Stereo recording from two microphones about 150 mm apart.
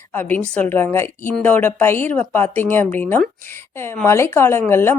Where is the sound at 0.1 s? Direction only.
10° left (ahead or behind).